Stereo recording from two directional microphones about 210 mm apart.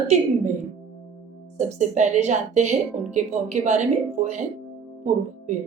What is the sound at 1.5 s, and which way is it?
A woman's voice, 35° right (ahead or behind).